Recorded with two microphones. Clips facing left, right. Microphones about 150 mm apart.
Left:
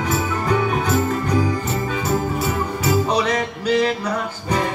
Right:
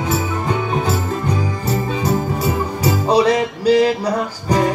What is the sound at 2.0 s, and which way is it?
Music, 40° right (ahead or behind).